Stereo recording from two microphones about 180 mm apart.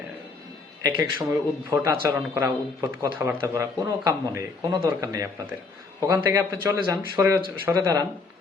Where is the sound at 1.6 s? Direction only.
15° right (ahead or behind).